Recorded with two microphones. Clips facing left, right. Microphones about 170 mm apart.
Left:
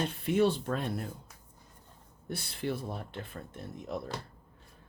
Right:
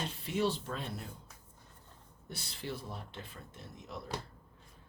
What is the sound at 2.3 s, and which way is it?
Speech, 55° left (ahead or behind).